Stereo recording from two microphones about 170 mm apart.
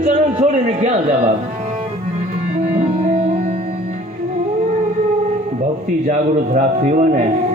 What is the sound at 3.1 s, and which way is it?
Music, 45° right (ahead or behind).